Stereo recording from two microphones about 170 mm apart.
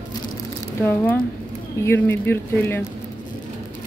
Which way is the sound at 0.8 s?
10° left (ahead or behind).